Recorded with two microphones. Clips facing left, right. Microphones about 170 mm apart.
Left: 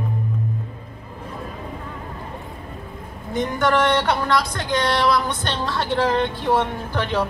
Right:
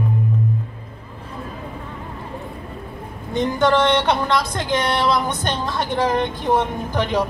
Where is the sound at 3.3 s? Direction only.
25° right (ahead or behind).